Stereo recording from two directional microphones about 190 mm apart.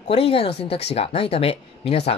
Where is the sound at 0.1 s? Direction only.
30° left (ahead or behind).